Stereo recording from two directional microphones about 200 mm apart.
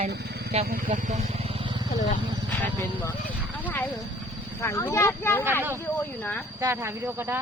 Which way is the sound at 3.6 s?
10° left (ahead or behind).